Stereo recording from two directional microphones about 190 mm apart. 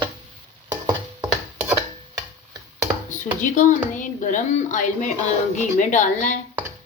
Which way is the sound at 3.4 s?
40° left (ahead or behind).